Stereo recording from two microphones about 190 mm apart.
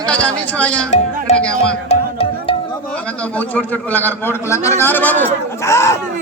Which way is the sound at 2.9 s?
5° left (ahead or behind).